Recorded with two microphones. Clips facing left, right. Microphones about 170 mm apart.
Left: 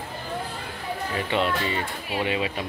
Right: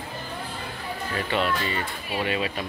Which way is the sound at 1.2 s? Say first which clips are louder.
Even; 20° left (ahead or behind).